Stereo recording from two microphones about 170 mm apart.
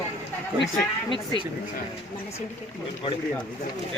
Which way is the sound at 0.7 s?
30° left (ahead or behind).